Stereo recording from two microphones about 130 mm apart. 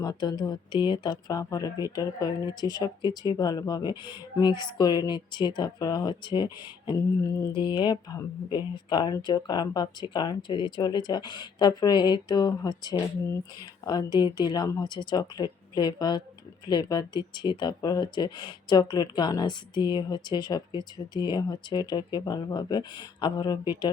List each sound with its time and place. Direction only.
0.0 s speech: 35° left (ahead or behind)
7.5 s speech: 35° left (ahead or behind)